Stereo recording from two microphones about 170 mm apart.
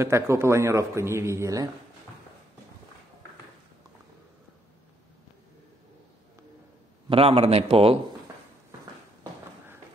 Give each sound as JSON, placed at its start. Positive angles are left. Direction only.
{"t": 0.0, "sound": "a man's voice", "side_deg": -15}
{"t": 7.1, "sound": "speech", "side_deg": -35}